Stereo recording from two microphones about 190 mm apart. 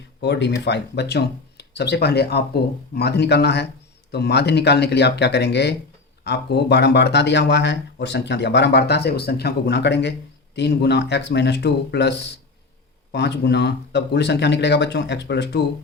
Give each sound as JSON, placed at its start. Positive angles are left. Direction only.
{"t": 0.2, "sound": "speech", "side_deg": 65}